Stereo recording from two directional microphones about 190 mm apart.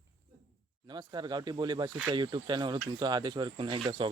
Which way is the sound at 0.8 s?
25° right (ahead or behind).